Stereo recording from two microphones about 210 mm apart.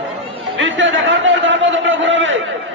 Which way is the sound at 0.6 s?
65° right (ahead or behind).